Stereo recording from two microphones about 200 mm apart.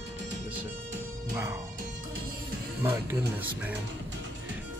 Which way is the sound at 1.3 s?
10° right (ahead or behind).